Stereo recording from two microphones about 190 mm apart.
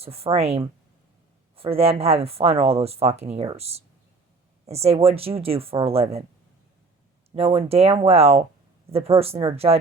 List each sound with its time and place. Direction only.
0.0 s speech: 30° right (ahead or behind)
7.3 s speech: 30° right (ahead or behind)